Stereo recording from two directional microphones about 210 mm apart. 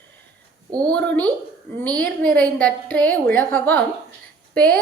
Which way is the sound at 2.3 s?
5° left (ahead or behind).